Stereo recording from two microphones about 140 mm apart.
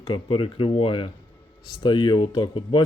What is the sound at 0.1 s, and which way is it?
Speech, 40° left (ahead or behind).